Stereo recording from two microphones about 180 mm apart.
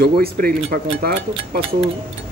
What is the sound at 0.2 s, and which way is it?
Speech, 55° right (ahead or behind).